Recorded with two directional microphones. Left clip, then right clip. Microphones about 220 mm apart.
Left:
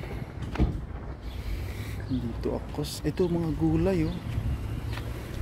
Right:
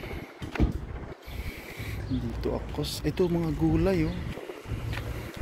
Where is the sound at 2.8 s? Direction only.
10° left (ahead or behind).